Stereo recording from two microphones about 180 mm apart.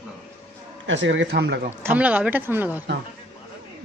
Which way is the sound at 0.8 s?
90° right.